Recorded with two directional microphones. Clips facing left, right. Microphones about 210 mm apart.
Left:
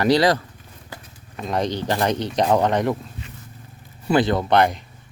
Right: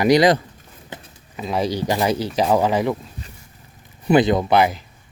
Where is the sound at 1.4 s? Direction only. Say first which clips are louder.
Right 1 dB; 5° right (ahead or behind).